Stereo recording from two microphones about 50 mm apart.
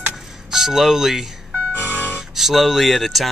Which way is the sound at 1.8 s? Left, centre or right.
Right.